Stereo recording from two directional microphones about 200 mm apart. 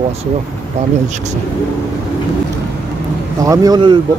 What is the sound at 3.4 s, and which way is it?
Speech, 20° right (ahead or behind).